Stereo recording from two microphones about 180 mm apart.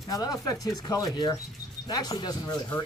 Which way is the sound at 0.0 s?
20° left (ahead or behind).